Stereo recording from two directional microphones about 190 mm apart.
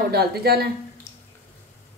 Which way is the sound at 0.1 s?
55° right (ahead or behind).